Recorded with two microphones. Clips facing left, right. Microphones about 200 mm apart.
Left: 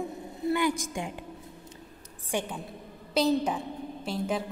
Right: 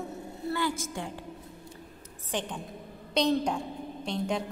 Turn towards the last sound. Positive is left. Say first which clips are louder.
# even
turn(degrees=5)  # may be behind; listen again after turning